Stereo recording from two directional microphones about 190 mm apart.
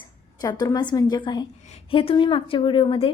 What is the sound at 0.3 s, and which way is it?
A woman's voice, 20° left (ahead or behind).